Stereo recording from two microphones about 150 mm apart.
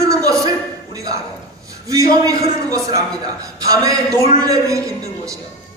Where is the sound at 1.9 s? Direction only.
20° right (ahead or behind).